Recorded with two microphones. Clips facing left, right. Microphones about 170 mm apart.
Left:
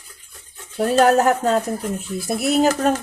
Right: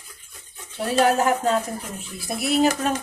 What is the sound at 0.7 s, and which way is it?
Speech, 40° left (ahead or behind).